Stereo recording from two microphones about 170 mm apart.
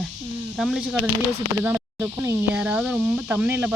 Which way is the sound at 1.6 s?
15° right (ahead or behind).